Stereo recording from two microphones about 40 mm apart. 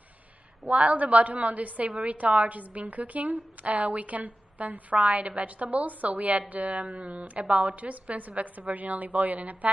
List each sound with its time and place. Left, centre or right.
0.7 s a woman's voice: right